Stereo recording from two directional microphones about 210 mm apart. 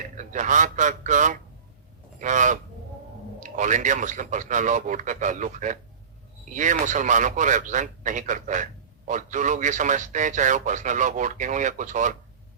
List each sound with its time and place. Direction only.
0.2 s a man's voice: 35° right (ahead or behind)